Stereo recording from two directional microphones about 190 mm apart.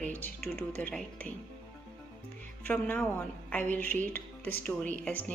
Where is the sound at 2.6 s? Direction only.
10° left (ahead or behind).